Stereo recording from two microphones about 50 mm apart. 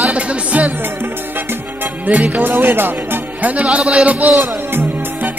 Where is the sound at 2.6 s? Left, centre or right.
Right.